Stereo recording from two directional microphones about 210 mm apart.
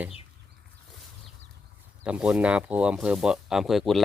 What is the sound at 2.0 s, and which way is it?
Speech, 5° right (ahead or behind).